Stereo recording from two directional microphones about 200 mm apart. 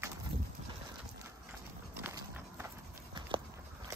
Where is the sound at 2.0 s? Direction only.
10° right (ahead or behind).